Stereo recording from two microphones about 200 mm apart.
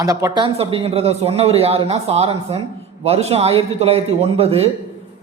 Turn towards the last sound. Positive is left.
turn(degrees=-30)  # may be behind; listen again after turning